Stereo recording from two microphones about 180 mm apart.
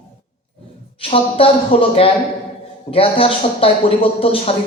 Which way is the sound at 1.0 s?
30° left (ahead or behind).